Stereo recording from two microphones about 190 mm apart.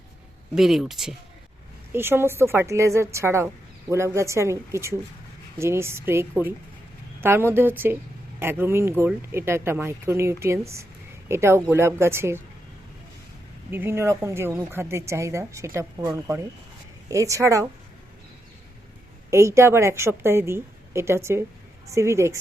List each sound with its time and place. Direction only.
0.5 s speech: centre (ahead or behind)
1.9 s a woman's voice: 10° right (ahead or behind)
13.7 s a woman's voice: 10° right (ahead or behind)
19.3 s a woman's voice: 15° right (ahead or behind)